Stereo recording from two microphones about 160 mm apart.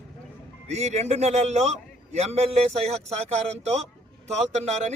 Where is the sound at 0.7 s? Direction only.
45° right (ahead or behind).